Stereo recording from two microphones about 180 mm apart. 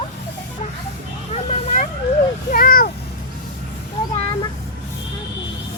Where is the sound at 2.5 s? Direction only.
50° left (ahead or behind).